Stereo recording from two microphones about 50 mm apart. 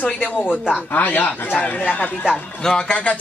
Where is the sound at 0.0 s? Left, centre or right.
Left.